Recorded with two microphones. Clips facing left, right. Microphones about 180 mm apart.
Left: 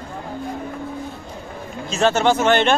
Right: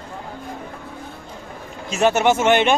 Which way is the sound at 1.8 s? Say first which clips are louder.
Even; 15° right (ahead or behind).